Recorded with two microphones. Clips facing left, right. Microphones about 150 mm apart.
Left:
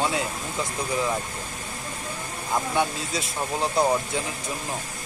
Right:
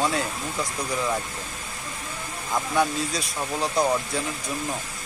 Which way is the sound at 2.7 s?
25° left (ahead or behind).